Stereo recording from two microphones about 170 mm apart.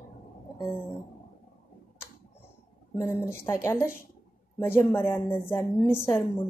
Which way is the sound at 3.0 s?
15° left (ahead or behind).